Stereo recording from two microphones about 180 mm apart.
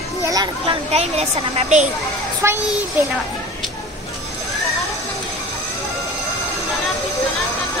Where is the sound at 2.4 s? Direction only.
15° right (ahead or behind).